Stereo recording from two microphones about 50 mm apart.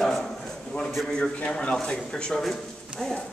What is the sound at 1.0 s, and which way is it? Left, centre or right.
Speech, centre.